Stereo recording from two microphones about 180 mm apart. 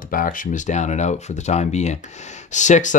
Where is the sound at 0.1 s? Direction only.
50° left (ahead or behind).